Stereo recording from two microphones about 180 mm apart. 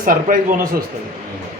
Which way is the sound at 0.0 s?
50° right (ahead or behind).